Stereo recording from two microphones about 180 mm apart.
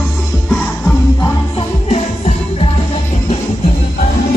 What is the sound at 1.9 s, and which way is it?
Music, 35° left (ahead or behind).